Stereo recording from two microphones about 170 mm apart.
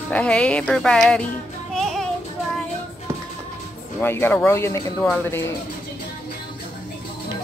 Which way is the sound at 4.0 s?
10° left (ahead or behind).